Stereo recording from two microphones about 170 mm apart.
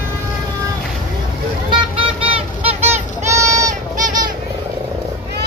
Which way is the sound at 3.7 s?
50° right (ahead or behind).